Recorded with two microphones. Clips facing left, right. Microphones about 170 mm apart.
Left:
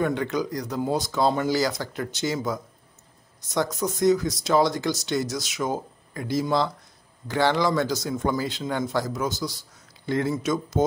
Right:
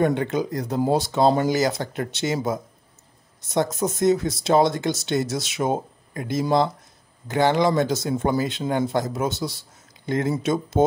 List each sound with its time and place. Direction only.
0.1 s speech: 25° right (ahead or behind)